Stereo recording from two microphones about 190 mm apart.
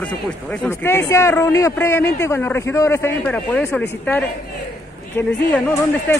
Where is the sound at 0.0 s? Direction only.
5° left (ahead or behind).